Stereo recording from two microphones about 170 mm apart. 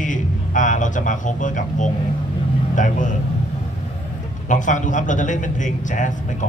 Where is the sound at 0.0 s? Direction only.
50° left (ahead or behind).